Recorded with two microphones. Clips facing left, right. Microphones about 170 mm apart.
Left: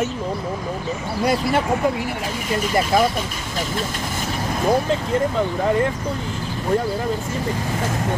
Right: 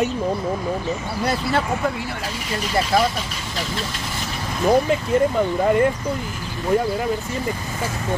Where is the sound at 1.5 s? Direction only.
15° left (ahead or behind).